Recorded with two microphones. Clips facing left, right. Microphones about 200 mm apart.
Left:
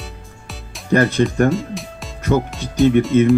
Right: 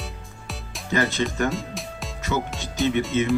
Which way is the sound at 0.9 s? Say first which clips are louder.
Left 8 dB; 55° left (ahead or behind).